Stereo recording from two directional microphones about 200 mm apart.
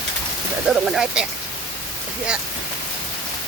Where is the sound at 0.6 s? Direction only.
Centre (ahead or behind).